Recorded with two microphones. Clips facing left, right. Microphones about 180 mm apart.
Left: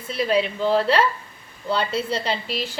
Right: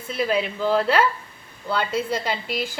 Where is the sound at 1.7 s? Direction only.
30° left (ahead or behind).